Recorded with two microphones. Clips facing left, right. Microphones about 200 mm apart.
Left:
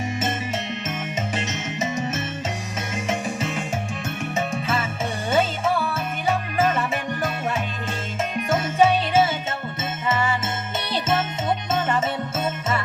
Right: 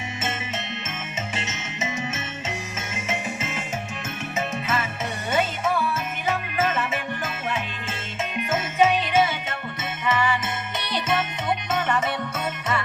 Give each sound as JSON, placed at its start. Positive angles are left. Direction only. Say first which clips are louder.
{"t": 1.4, "sound": "music", "louder": "left 5 dB", "side_deg": 35}
{"t": 4.4, "sound": "music", "louder": "left 1 dB", "side_deg": 30}
{"t": 8.4, "sound": "jingle bell", "louder": "left 2 dB", "side_deg": 35}
{"t": 11.7, "sound": "music", "louder": "left 1 dB", "side_deg": 25}